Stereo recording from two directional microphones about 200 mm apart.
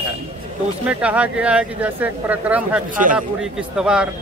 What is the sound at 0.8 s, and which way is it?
Speech, 5° right (ahead or behind).